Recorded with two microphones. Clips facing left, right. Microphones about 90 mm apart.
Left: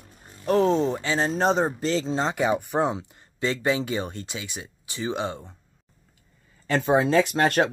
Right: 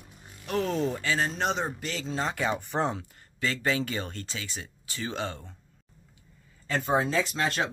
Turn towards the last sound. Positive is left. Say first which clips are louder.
# left 7 dB
turn(degrees=55)  # may be behind; listen again after turning